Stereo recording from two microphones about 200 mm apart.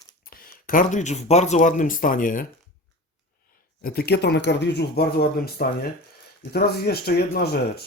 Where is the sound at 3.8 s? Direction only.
50° left (ahead or behind).